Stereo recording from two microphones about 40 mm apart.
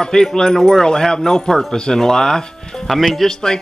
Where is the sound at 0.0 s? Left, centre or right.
Centre.